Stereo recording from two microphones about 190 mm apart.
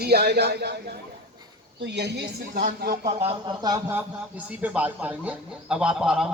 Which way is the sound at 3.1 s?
35° right (ahead or behind).